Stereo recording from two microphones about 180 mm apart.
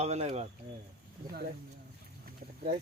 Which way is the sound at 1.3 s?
60° right (ahead or behind).